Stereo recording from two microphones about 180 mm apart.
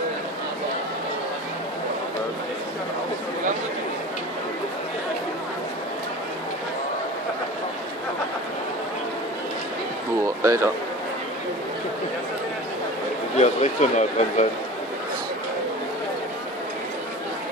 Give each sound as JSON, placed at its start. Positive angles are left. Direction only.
{"t": 10.2, "sound": "speech", "side_deg": -15}
{"t": 13.4, "sound": "speech", "side_deg": 40}